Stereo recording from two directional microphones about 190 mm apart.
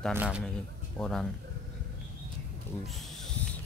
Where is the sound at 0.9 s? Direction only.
5° left (ahead or behind).